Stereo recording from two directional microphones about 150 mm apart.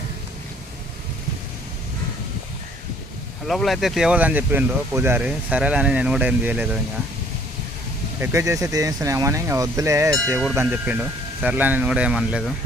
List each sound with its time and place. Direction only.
3.4 s speech: centre (ahead or behind)
8.2 s speech: 20° right (ahead or behind)